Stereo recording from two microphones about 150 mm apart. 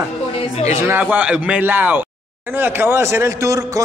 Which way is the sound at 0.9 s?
10° right (ahead or behind).